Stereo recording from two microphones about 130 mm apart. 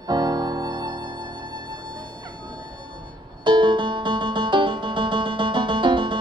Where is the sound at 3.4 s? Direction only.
40° right (ahead or behind).